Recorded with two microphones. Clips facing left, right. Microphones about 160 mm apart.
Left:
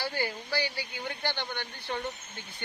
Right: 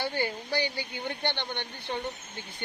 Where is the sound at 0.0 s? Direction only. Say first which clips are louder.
Right 2 dB; 20° right (ahead or behind).